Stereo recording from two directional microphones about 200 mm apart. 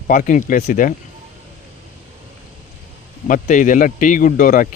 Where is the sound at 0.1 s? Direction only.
40° left (ahead or behind).